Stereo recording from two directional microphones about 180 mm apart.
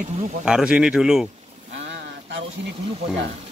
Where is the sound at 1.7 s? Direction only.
90° right.